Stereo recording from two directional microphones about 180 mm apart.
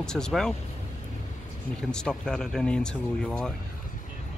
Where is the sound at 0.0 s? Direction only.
5° left (ahead or behind).